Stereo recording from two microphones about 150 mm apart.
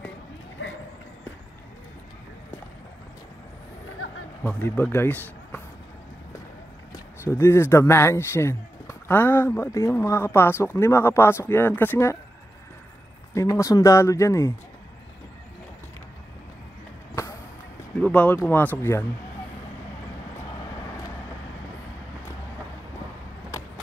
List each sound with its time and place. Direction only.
4.4 s speech: 10° left (ahead or behind)
7.2 s speech: 15° left (ahead or behind)
13.3 s speech: 20° left (ahead or behind)
18.0 s speech: 10° left (ahead or behind)